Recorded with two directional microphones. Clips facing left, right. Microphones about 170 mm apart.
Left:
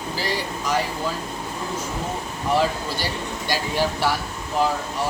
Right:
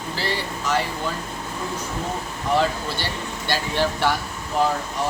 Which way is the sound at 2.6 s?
10° left (ahead or behind).